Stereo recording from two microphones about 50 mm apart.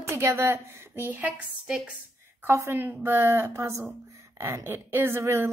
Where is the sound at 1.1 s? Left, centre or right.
Right.